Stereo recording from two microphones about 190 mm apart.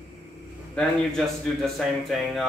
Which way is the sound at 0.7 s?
Centre (ahead or behind).